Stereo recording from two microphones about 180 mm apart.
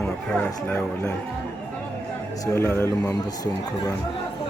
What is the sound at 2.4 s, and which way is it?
Speech, 15° left (ahead or behind).